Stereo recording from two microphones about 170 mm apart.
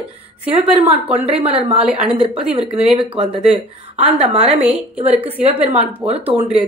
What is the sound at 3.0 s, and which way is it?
Speech, 30° right (ahead or behind).